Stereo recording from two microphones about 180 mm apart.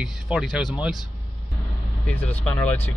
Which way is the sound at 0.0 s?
Centre (ahead or behind).